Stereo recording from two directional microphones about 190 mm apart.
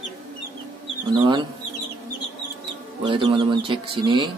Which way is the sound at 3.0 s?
25° right (ahead or behind).